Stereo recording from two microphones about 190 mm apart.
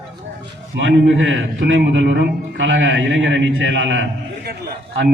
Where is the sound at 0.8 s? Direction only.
70° right (ahead or behind).